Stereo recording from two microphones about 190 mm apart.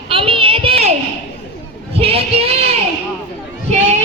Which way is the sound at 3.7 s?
35° right (ahead or behind).